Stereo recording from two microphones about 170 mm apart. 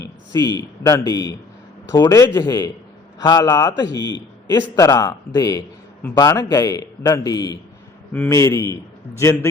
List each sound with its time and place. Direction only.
0.3 s a man's voice: 20° left (ahead or behind)